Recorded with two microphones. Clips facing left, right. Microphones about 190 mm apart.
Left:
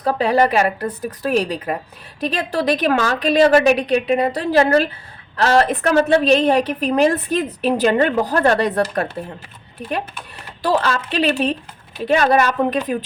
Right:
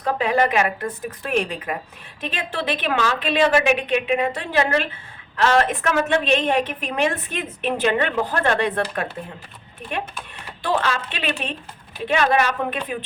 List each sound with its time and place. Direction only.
0.0 s a woman's voice: 35° left (ahead or behind)
10.6 s a woman's voice: 35° left (ahead or behind)